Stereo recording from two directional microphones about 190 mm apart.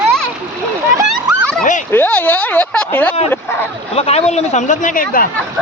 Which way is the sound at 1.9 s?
10° left (ahead or behind).